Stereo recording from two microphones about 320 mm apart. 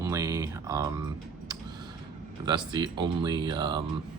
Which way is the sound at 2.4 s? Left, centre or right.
Centre.